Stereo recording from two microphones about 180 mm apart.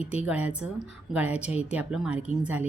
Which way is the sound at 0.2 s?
5° right (ahead or behind).